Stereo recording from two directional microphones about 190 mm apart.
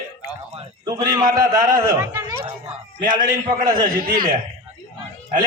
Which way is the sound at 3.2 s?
45° right (ahead or behind).